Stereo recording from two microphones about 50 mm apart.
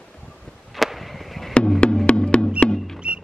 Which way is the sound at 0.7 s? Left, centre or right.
Centre.